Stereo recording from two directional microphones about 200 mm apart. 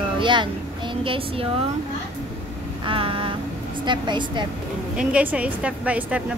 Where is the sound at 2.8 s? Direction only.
25° right (ahead or behind).